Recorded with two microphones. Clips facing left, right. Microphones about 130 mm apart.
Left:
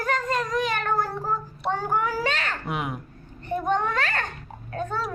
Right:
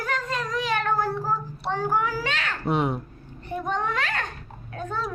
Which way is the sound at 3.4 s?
5° right (ahead or behind).